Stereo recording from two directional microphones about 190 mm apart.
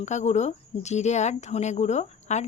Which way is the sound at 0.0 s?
40° left (ahead or behind).